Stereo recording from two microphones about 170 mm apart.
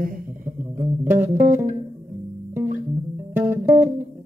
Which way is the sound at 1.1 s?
15° right (ahead or behind).